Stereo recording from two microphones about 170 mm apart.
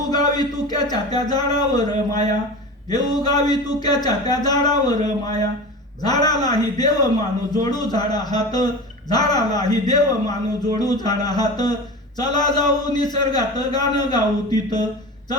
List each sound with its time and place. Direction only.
0.1 s a man's voice: 25° left (ahead or behind)